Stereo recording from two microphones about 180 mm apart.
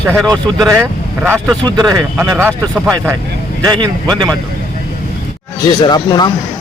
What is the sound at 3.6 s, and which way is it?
Speech, 25° right (ahead or behind).